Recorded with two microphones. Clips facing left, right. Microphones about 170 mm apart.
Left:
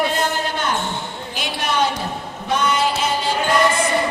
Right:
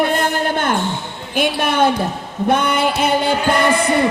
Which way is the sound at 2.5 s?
55° right (ahead or behind).